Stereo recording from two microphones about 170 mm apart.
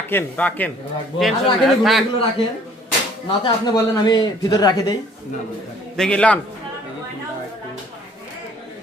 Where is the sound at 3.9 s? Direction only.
25° left (ahead or behind).